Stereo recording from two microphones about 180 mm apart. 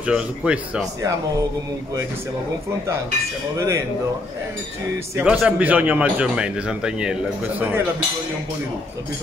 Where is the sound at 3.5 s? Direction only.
15° right (ahead or behind).